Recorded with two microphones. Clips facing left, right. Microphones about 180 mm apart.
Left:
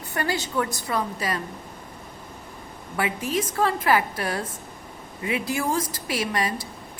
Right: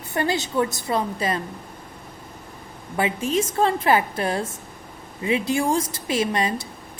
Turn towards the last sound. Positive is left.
turn(degrees=-25)  # may be behind; listen again after turning